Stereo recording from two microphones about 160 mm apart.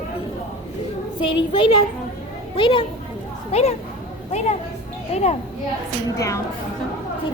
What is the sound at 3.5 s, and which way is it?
Speech, 40° left (ahead or behind).